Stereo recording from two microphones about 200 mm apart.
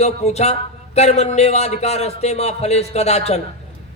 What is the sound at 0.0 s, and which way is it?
A man's voice, 35° left (ahead or behind).